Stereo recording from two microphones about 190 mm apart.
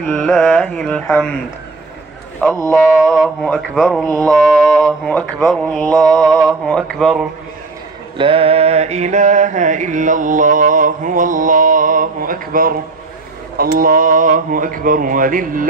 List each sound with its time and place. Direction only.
0.0 s mantra: 5° left (ahead or behind)
2.4 s speech: 15° left (ahead or behind)
2.7 s mantra: 5° right (ahead or behind)
8.2 s mantra: 30° right (ahead or behind); by 15.7 s 45° right (ahead or behind)